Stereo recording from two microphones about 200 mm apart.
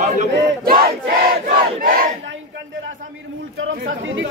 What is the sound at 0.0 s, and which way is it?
Battle cry, 40° right (ahead or behind).